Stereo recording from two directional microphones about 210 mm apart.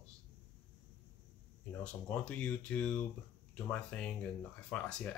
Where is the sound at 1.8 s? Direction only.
5° left (ahead or behind).